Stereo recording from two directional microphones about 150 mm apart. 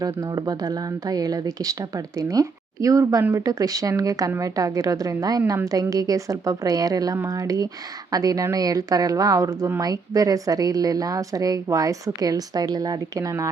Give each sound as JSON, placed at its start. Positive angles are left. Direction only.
{"t": 0.0, "sound": "speech", "side_deg": -25}